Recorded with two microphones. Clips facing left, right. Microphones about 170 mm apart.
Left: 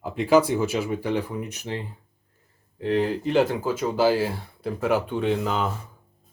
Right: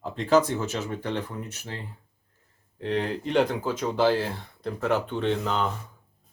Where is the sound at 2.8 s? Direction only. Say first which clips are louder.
Left 4 dB; centre (ahead or behind).